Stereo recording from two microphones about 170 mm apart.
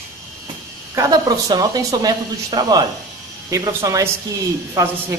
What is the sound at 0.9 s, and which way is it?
Speech, 20° right (ahead or behind).